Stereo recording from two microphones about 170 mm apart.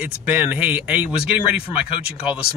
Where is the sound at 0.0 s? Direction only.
10° right (ahead or behind).